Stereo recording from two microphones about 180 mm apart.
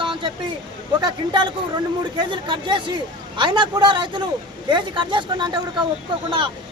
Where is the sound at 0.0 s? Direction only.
25° right (ahead or behind).